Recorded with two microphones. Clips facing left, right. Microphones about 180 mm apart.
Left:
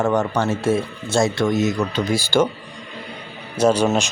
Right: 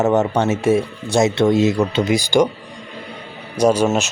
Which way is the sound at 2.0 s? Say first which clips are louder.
Right 1 dB; 15° right (ahead or behind).